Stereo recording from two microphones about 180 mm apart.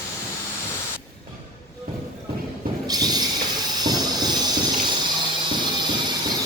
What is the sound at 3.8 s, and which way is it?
Train, 20° right (ahead or behind).